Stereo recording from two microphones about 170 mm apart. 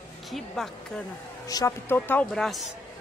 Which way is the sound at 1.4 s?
20° left (ahead or behind).